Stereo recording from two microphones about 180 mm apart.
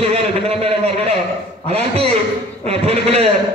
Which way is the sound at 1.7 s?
35° right (ahead or behind).